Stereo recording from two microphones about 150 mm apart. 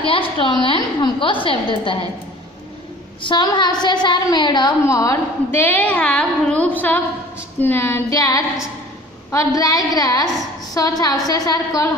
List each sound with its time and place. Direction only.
0.0 s a woman's voice: 35° left (ahead or behind)
3.2 s a woman's voice: 30° left (ahead or behind)